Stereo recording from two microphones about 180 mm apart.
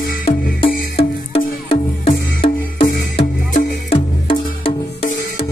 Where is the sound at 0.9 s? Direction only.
35° left (ahead or behind).